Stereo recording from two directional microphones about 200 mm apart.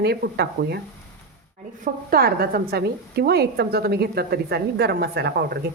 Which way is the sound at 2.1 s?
50° right (ahead or behind).